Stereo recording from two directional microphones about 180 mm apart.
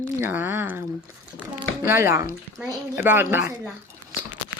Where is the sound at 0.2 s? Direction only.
10° right (ahead or behind).